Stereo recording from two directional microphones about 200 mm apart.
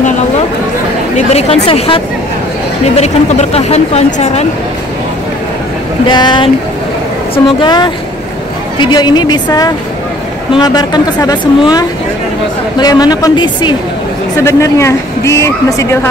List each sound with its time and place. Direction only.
1.1 s a sound: 30° left (ahead or behind)
3.0 s speech: 30° left (ahead or behind)
6.0 s speech: 20° left (ahead or behind)
8.9 s a woman's voice: 20° left (ahead or behind)